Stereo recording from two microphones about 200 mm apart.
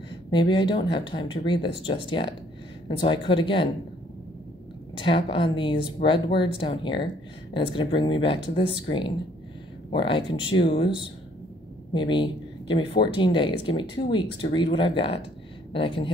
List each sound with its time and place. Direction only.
0.3 s speech: 25° left (ahead or behind)
4.9 s speech: 25° left (ahead or behind)